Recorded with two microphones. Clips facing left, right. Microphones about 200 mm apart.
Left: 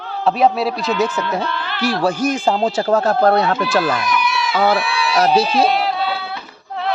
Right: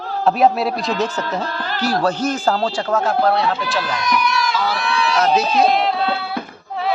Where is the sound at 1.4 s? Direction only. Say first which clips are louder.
Even; 40° right (ahead or behind).